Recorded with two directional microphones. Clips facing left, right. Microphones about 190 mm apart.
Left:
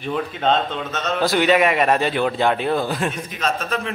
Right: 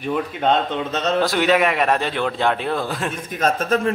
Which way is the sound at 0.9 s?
35° right (ahead or behind).